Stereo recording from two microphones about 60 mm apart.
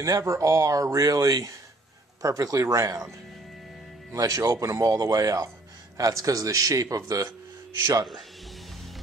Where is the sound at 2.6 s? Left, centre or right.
Right.